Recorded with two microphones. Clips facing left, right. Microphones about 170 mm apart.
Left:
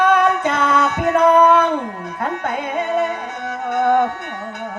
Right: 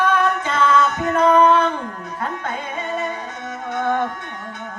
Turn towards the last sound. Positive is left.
turn(degrees=55)  # may be behind; listen again after turning